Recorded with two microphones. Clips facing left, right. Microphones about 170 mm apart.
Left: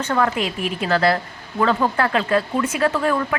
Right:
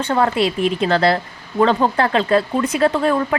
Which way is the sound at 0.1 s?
30° right (ahead or behind).